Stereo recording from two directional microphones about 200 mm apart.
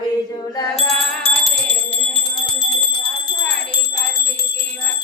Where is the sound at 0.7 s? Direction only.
Centre (ahead or behind).